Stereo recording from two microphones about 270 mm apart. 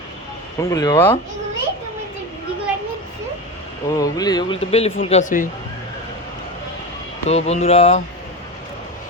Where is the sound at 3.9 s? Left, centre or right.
Centre.